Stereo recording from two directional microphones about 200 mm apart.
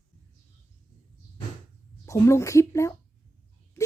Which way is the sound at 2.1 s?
15° left (ahead or behind).